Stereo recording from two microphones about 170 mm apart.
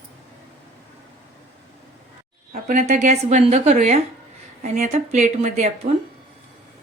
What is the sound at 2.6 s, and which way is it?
A woman's voice, 45° right (ahead or behind).